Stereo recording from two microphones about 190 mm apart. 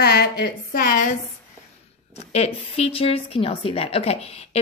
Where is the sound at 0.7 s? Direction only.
45° left (ahead or behind).